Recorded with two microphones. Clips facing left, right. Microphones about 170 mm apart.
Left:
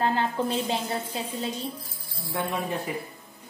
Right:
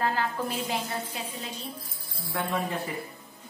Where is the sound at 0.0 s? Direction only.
25° left (ahead or behind).